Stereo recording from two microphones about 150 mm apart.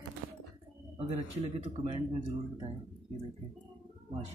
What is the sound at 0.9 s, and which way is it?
Speech, 40° right (ahead or behind).